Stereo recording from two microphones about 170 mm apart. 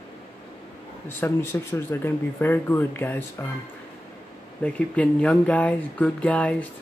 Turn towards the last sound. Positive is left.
turn(degrees=10)  # may be behind; listen again after turning